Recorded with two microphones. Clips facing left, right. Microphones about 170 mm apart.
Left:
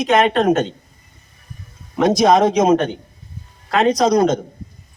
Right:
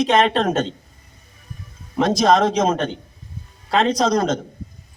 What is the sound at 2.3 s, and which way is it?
Speech, 10° left (ahead or behind).